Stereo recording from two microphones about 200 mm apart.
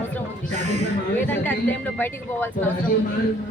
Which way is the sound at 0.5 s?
35° right (ahead or behind).